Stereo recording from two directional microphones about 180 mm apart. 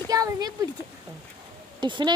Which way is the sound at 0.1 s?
20° right (ahead or behind).